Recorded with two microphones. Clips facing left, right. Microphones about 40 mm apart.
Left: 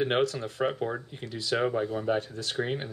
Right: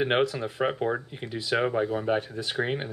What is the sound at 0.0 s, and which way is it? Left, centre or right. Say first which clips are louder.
Speech: right 2 dB; centre.